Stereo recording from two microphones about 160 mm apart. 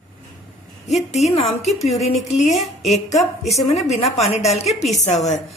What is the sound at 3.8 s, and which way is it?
Speech, 45° left (ahead or behind).